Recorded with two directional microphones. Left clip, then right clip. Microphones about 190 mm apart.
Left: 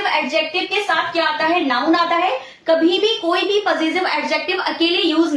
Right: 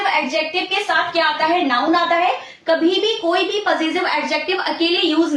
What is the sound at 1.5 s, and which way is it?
A woman's voice, 15° left (ahead or behind).